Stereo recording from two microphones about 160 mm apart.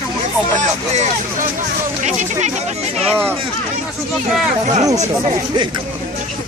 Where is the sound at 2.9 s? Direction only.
5° left (ahead or behind).